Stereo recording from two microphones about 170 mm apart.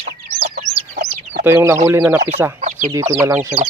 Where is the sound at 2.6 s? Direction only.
45° right (ahead or behind).